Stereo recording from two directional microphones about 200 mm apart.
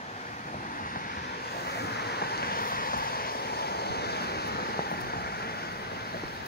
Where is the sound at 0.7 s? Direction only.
45° left (ahead or behind).